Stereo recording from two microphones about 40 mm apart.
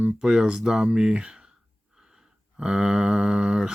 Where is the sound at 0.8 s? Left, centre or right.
Right.